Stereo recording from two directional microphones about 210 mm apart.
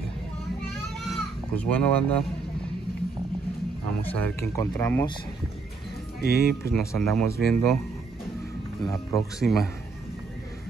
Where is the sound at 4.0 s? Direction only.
10° left (ahead or behind).